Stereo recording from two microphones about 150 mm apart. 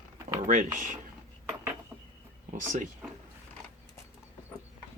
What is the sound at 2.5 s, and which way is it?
Speech, 60° right (ahead or behind).